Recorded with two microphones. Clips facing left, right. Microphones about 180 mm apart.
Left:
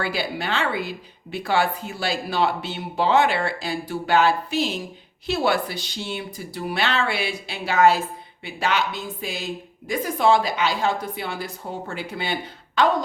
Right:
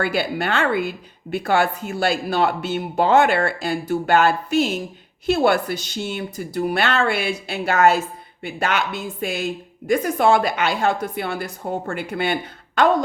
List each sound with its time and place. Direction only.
0.0 s a woman's voice: 50° right (ahead or behind)